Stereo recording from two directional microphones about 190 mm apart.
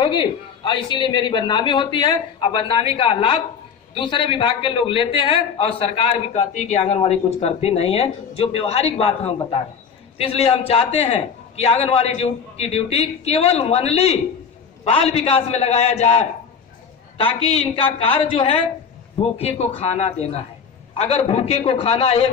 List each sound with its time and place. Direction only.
0.0 s a man's voice: 25° left (ahead or behind)